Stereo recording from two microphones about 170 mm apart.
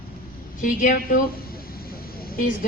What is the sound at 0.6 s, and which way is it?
Speech, 50° left (ahead or behind).